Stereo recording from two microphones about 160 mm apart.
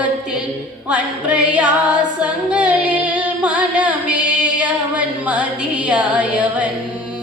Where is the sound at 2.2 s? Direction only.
5° right (ahead or behind).